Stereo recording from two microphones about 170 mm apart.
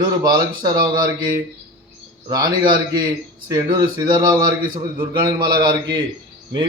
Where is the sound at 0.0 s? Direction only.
25° right (ahead or behind).